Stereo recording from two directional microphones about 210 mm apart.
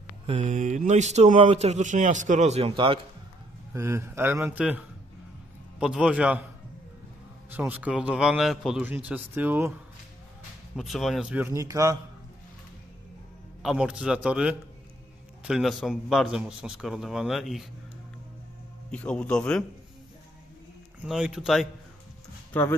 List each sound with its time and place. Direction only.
0.3 s speech: 35° right (ahead or behind)
3.7 s a man's voice: 15° right (ahead or behind)
7.5 s a man's voice: 5° right (ahead or behind)
10.8 s a man's voice: centre (ahead or behind)
13.6 s a man's voice: 5° right (ahead or behind)
18.9 s a man's voice: 5° left (ahead or behind)
21.0 s a man's voice: 5° right (ahead or behind)
22.5 s speech: 10° left (ahead or behind)